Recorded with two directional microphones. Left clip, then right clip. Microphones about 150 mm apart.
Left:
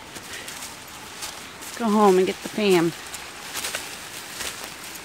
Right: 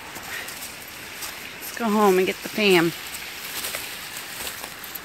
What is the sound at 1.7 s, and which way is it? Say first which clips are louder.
Speech: left 1 dB; 20° left (ahead or behind).